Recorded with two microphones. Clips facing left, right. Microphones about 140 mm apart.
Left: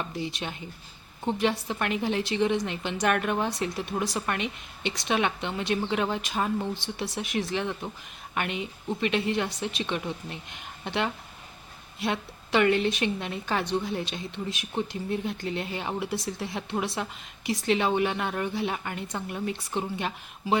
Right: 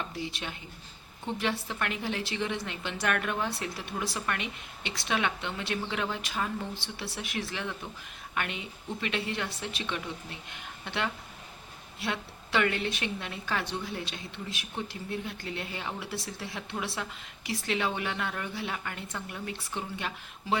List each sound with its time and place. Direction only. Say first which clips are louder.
0.3 s speech: left 4 dB; 20° left (ahead or behind)